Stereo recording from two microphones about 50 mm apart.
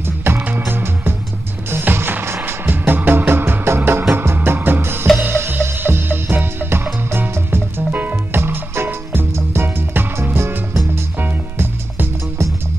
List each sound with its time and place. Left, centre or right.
0.0 s music: right
5.3 s music: right
7.9 s music: right
8.4 s music: right
11.1 s music: right